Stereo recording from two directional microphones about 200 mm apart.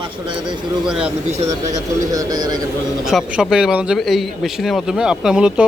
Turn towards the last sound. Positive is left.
turn(degrees=-5)  # may be behind; listen again after turning